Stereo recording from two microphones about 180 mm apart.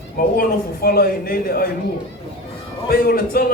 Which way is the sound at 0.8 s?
60° left (ahead or behind).